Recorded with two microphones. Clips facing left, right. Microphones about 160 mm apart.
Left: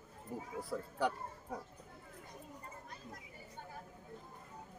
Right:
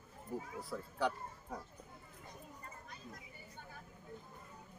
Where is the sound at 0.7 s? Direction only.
20° left (ahead or behind).